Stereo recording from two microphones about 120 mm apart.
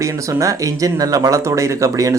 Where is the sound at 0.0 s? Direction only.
25° right (ahead or behind).